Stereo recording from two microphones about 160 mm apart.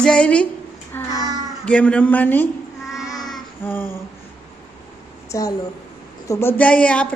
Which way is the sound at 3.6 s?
15° left (ahead or behind).